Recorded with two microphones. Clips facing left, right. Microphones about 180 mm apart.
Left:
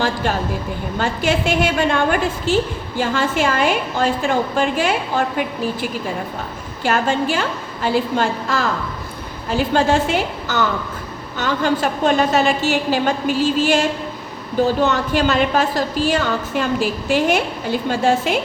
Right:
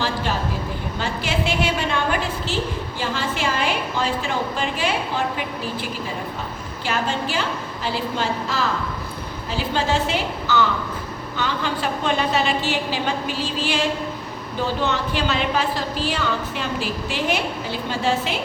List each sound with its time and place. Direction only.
0.9 s a woman's voice: 50° left (ahead or behind)
6.8 s a woman's voice: 50° left (ahead or behind)